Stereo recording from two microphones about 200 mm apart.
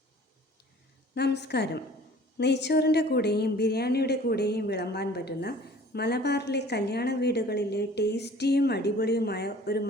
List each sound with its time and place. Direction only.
1.1 s a woman's voice: 55° left (ahead or behind)